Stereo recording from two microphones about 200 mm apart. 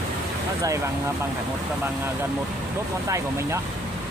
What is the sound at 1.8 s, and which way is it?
Speech, 10° right (ahead or behind).